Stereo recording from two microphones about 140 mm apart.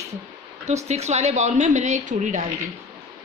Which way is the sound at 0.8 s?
50° right (ahead or behind).